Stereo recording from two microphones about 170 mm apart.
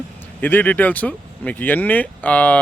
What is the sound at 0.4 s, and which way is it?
Speech, 10° left (ahead or behind).